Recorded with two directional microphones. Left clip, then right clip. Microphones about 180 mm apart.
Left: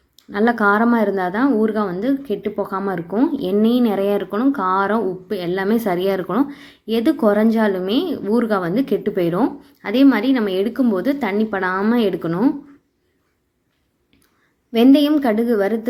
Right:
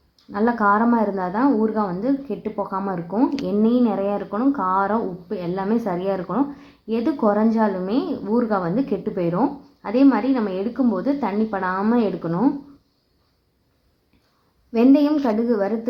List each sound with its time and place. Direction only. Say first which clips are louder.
0.3 s a woman's voice: left 2 dB; 15° left (ahead or behind)
14.7 s a woman's voice: left 3 dB; 10° left (ahead or behind)